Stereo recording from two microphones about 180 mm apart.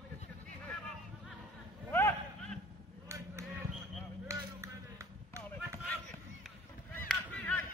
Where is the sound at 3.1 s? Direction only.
15° right (ahead or behind).